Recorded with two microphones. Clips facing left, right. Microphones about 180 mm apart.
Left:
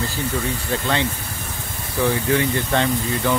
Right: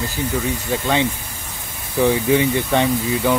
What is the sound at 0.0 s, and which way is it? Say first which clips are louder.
Speech: right 2 dB; 15° right (ahead or behind).